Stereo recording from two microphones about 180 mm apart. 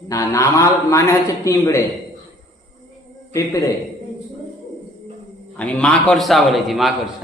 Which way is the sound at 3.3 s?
15° left (ahead or behind).